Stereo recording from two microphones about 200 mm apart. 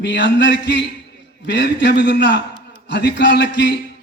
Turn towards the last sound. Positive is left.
turn(degrees=60)  # may be behind; listen again after turning